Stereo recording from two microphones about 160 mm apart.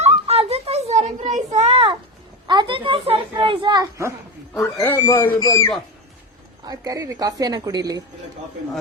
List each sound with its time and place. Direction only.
0.0 s a sound: 40° right (ahead or behind)
2.5 s a child's voice: 30° right (ahead or behind)
4.5 s speech: 15° left (ahead or behind)
6.7 s a woman's voice: 20° right (ahead or behind)